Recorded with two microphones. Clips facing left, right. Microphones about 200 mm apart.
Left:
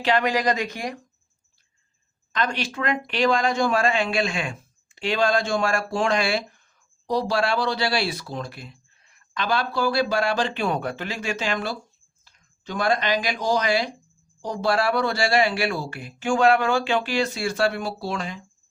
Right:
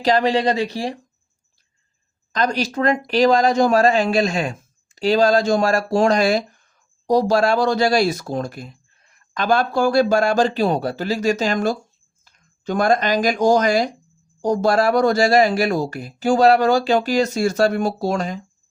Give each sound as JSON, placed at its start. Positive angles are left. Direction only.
{"t": 0.0, "sound": "speech", "side_deg": -35}
{"t": 2.3, "sound": "speech", "side_deg": -40}